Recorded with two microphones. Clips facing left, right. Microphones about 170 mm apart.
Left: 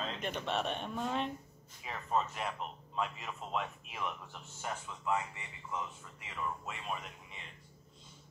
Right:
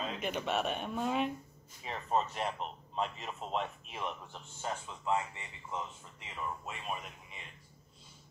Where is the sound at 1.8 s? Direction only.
30° right (ahead or behind).